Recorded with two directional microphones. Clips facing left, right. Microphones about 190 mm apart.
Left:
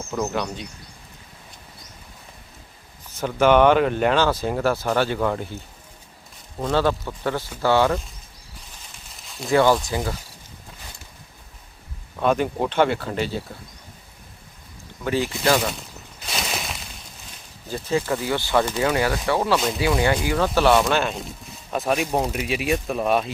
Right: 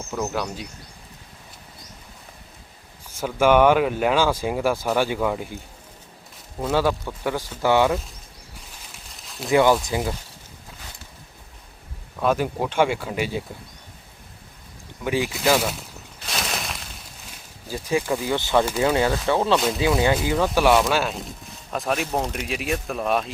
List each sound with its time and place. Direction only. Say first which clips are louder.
0.1 s speech: left 1 dB; centre (ahead or behind)
3.1 s speech: left 1 dB; 10° right (ahead or behind)
6.6 s speech: even; 10° right (ahead or behind)
9.1 s a sound: even; centre (ahead or behind)
9.5 s speech: even; 15° right (ahead or behind)
12.2 s speech: left 1 dB; 5° right (ahead or behind)
15.0 s a sound: even; 10° right (ahead or behind)
17.7 s speech: even; 10° right (ahead or behind)
19.5 s speech: right 1 dB; centre (ahead or behind)
20.2 s speech: even; 20° right (ahead or behind); by 23.3 s centre (ahead or behind)